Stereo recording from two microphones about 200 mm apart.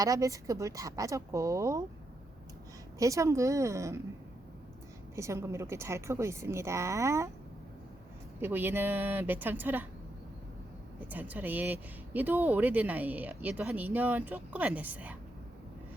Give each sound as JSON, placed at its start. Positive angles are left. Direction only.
{"t": 0.0, "sound": "speech", "side_deg": -15}
{"t": 3.0, "sound": "speech", "side_deg": -15}
{"t": 5.1, "sound": "speech", "side_deg": -15}
{"t": 8.4, "sound": "speech", "side_deg": -10}
{"t": 11.1, "sound": "speech", "side_deg": -10}